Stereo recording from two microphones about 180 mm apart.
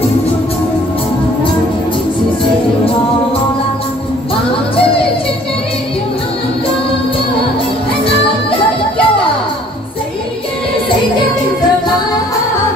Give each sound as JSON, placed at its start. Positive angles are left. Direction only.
{"t": 8.0, "sound": "music", "side_deg": 30}